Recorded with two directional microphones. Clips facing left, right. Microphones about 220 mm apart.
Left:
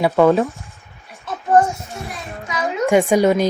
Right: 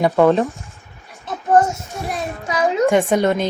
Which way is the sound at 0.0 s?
Centre (ahead or behind).